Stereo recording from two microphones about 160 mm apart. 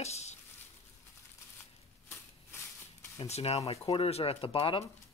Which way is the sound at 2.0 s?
15° left (ahead or behind).